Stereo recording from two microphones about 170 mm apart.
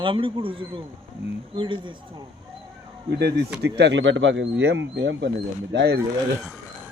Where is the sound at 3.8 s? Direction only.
90° right.